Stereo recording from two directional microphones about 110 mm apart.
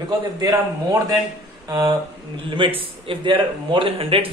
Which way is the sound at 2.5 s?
55° right (ahead or behind).